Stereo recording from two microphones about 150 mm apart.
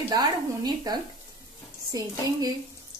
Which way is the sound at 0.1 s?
25° right (ahead or behind).